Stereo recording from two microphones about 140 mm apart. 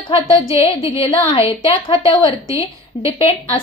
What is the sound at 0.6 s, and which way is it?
A woman's voice, 40° left (ahead or behind).